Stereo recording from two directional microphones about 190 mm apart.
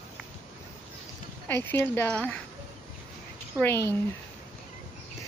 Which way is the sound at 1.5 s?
10° left (ahead or behind).